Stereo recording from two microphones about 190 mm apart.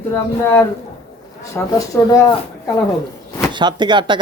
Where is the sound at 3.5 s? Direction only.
25° right (ahead or behind).